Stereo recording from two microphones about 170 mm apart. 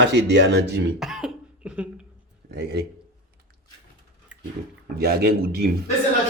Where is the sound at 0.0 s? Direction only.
90° right.